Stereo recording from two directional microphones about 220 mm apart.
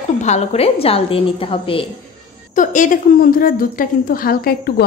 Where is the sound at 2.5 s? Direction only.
35° left (ahead or behind).